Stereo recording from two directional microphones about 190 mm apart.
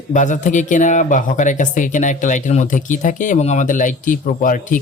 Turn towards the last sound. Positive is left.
turn(degrees=45)  # may be behind; listen again after turning